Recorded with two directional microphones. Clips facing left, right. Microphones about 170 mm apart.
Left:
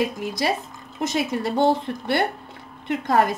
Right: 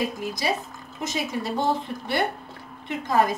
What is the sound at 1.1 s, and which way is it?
A woman's voice, 60° left (ahead or behind).